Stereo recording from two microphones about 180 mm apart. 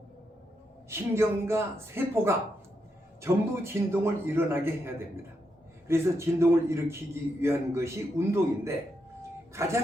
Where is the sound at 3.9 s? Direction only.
10° right (ahead or behind).